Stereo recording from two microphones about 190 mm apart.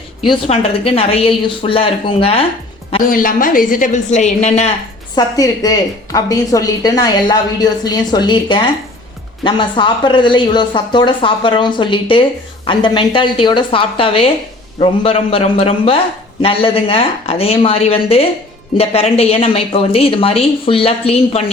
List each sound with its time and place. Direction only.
0.2 s a woman's voice: 30° left (ahead or behind)
3.1 s a woman's voice: 45° left (ahead or behind)
5.1 s a woman's voice: 20° left (ahead or behind)